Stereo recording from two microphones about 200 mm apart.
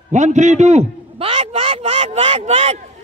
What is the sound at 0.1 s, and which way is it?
A man's voice, 35° right (ahead or behind).